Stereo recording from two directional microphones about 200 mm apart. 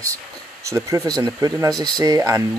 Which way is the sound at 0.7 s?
15° right (ahead or behind).